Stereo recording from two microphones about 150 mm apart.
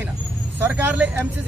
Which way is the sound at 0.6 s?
10° right (ahead or behind).